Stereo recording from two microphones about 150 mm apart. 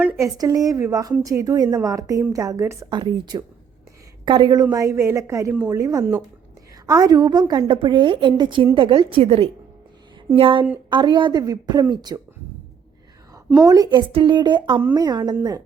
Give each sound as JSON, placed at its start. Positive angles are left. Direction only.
{"t": 0.2, "sound": "a woman's voice", "side_deg": -25}
{"t": 13.7, "sound": "a woman's voice", "side_deg": -25}
{"t": 14.1, "sound": "a woman's voice", "side_deg": -35}